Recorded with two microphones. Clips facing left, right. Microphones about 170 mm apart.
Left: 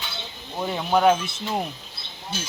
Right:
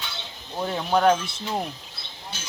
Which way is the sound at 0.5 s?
5° left (ahead or behind).